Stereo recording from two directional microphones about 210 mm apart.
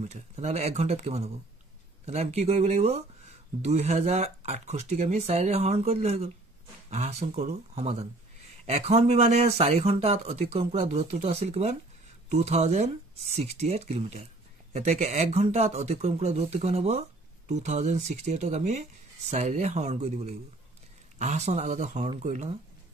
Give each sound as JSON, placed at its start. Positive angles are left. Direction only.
{"t": 0.0, "sound": "speech", "side_deg": -30}